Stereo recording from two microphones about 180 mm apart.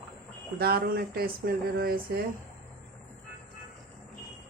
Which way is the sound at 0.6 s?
60° right (ahead or behind).